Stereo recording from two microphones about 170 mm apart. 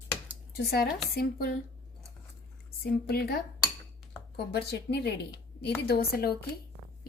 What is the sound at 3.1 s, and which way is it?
Speech, 70° left (ahead or behind).